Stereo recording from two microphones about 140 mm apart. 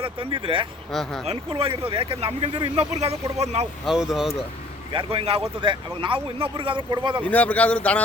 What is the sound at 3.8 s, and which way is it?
Speech, 5° right (ahead or behind).